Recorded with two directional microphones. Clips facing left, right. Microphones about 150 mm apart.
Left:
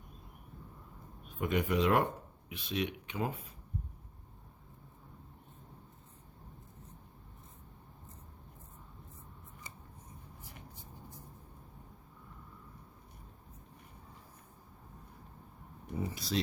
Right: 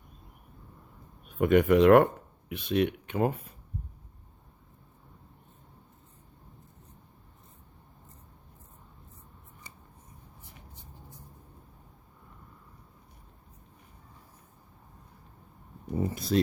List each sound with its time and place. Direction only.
1.4 s speech: 60° right (ahead or behind)
16.0 s speech: 50° right (ahead or behind)